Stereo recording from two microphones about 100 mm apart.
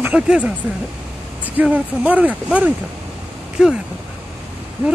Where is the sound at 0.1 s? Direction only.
10° right (ahead or behind).